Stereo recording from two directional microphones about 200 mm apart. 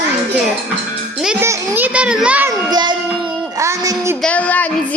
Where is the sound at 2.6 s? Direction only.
20° right (ahead or behind).